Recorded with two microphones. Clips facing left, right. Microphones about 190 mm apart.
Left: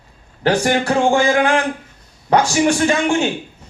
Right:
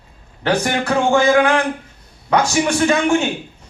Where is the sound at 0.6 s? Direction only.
35° left (ahead or behind).